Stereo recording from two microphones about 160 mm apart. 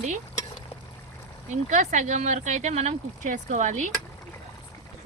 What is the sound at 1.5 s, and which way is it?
Speech, 50° right (ahead or behind).